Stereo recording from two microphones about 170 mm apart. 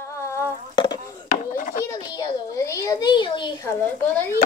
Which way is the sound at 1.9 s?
25° left (ahead or behind).